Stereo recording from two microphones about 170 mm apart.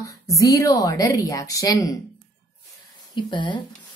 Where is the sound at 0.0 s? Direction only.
20° left (ahead or behind).